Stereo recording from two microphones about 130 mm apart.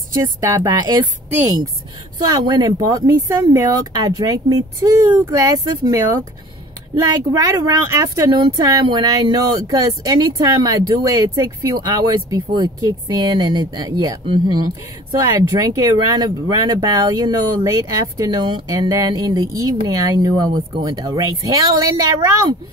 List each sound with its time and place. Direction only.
0.1 s speech: 25° right (ahead or behind)
2.2 s a woman's voice: 30° right (ahead or behind)